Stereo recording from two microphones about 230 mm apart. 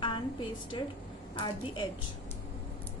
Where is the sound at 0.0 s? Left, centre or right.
Centre.